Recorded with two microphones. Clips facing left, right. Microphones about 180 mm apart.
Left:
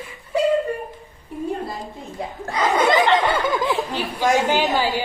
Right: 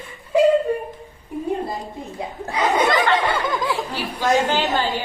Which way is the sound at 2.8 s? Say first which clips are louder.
Left 2 dB; 20° left (ahead or behind).